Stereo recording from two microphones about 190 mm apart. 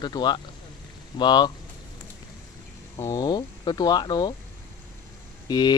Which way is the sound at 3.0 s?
15° left (ahead or behind).